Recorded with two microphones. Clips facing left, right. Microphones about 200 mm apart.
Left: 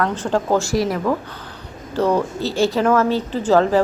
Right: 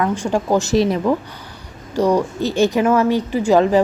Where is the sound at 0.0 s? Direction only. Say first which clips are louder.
Right 1 dB; 10° right (ahead or behind).